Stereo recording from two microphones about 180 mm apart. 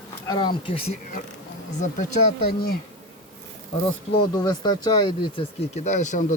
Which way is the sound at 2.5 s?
60° left (ahead or behind).